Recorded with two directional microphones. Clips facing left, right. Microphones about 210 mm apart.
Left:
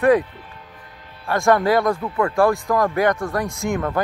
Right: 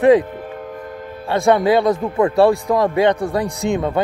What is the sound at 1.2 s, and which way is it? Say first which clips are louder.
Speech: right 3 dB; 15° right (ahead or behind).